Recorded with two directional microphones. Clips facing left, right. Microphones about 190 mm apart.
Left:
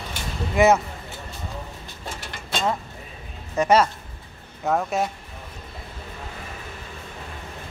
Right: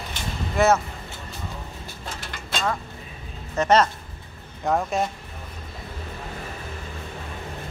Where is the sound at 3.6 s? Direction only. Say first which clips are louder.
Left 1 dB; 10° left (ahead or behind).